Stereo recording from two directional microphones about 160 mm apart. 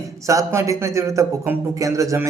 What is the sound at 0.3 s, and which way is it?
A man's voice, 20° right (ahead or behind).